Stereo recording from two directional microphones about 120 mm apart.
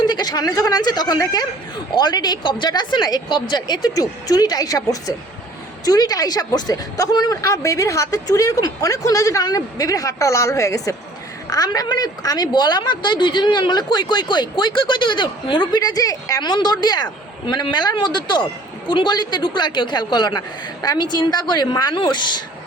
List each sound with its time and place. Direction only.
0.0 s a woman's voice: 35° left (ahead or behind)